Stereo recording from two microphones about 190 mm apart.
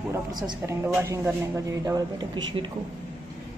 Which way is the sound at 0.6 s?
10° right (ahead or behind).